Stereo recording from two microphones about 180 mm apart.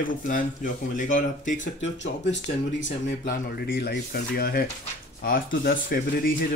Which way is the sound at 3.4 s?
60° left (ahead or behind).